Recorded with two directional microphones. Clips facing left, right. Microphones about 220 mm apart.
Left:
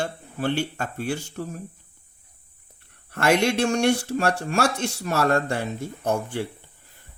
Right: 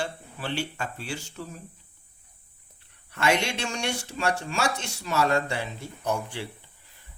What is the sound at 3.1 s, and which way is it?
Speech, 55° left (ahead or behind).